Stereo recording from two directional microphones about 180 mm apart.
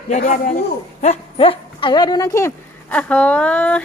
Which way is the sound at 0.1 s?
40° left (ahead or behind).